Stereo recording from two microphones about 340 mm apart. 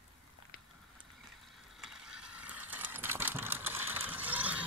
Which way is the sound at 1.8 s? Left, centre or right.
Centre.